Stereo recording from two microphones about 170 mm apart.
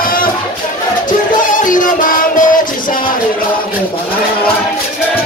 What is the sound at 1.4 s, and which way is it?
Music, 50° left (ahead or behind).